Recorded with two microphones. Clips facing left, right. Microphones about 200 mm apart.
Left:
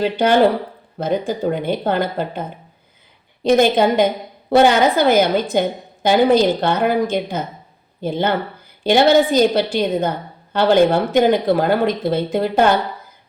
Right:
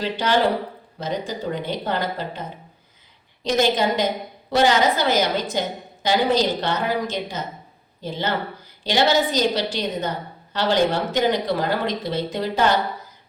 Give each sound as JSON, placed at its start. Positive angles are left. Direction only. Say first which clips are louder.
{"t": 0.0, "sound": "a woman's voice", "louder": "left 6 dB", "side_deg": 55}
{"t": 3.4, "sound": "a woman's voice", "louder": "left 6 dB", "side_deg": 55}